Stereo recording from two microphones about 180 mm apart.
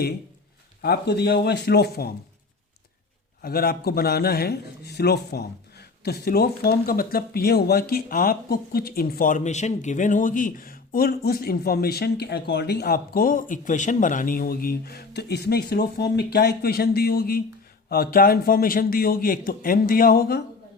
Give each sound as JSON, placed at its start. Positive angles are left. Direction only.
{"t": 0.8, "sound": "a man's voice", "side_deg": 60}
{"t": 3.4, "sound": "a man's voice", "side_deg": 55}